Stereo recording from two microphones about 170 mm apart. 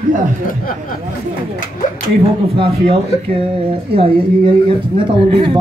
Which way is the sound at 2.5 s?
35° right (ahead or behind).